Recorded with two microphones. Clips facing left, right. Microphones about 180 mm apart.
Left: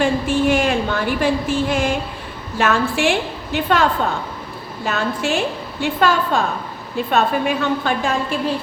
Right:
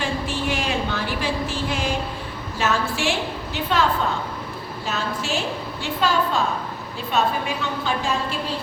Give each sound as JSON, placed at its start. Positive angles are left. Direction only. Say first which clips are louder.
{"t": 0.0, "sound": "a sound", "louder": "left 8 dB", "side_deg": 50}
{"t": 2.6, "sound": "a woman's voice", "louder": "left 5 dB", "side_deg": 60}
{"t": 4.9, "sound": "a woman's voice", "louder": "left 6 dB", "side_deg": 55}